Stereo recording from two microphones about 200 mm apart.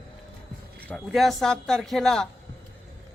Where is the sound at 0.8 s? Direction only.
5° left (ahead or behind).